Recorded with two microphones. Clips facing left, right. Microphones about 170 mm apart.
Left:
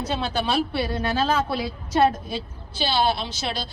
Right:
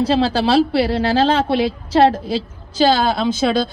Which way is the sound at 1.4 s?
70° right (ahead or behind).